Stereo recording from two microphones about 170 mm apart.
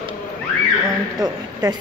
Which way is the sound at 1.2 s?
25° right (ahead or behind).